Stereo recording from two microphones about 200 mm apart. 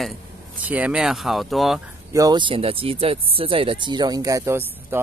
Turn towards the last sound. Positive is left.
turn(degrees=-15)  # may be behind; listen again after turning